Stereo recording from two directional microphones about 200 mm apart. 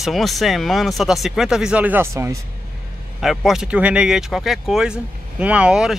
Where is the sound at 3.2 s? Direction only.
Centre (ahead or behind).